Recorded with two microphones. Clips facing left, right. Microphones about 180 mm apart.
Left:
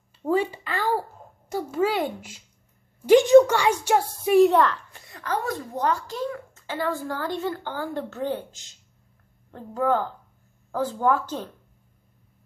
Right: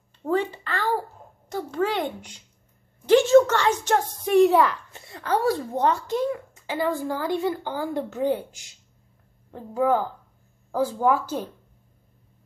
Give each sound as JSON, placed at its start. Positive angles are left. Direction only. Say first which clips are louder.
{"t": 0.2, "sound": "a sound", "louder": "left 1 dB", "side_deg": 10}
{"t": 1.5, "sound": "a woman's voice", "louder": "left 1 dB", "side_deg": 10}
{"t": 4.9, "sound": "a child's voice", "louder": "right 4 dB", "side_deg": -30}